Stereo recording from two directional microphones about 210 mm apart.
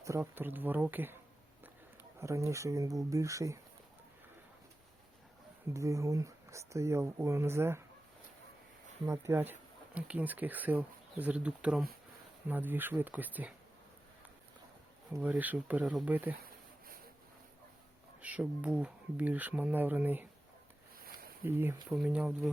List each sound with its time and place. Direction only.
0.0 s speech: 15° right (ahead or behind)
5.7 s speech: 15° right (ahead or behind)
9.0 s speech: 10° right (ahead or behind)
15.1 s speech: 10° right (ahead or behind)
16.4 s a sound: 45° right (ahead or behind)
18.2 s speech: 5° right (ahead or behind)
21.4 s speech: 10° right (ahead or behind)